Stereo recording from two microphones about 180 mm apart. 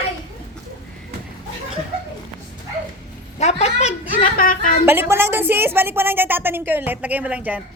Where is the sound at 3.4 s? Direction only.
35° left (ahead or behind).